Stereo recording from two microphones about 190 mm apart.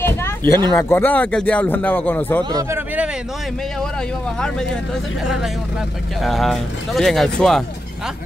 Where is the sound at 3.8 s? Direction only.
5° left (ahead or behind).